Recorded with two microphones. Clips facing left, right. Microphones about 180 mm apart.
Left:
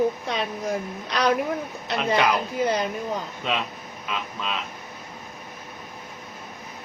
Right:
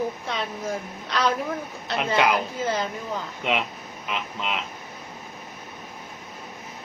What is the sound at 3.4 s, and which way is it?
Speech, 20° right (ahead or behind).